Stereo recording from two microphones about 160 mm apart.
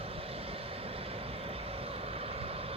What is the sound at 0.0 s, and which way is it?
Vehicle, 35° right (ahead or behind).